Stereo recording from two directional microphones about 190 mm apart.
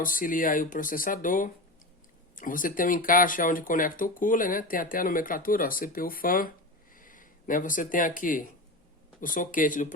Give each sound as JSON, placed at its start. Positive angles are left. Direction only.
{"t": 0.0, "sound": "speech", "side_deg": 45}